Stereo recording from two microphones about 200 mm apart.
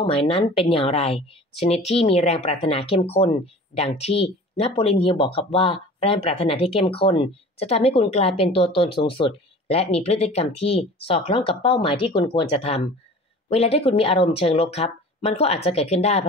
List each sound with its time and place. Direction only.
0.0 s speech: 25° left (ahead or behind)